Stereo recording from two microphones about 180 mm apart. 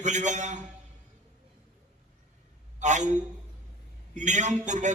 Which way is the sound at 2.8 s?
40° right (ahead or behind).